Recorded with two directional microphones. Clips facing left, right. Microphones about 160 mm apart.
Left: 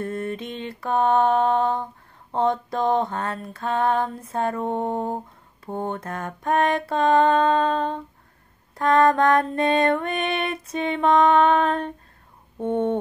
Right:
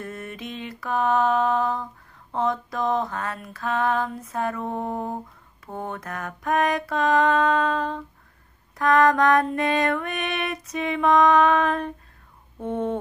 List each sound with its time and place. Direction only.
0.0 s mantra: 30° left (ahead or behind)